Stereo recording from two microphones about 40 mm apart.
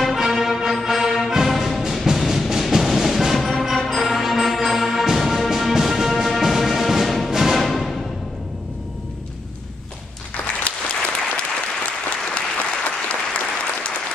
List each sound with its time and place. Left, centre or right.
0.1 s music: centre
10.6 s applause: left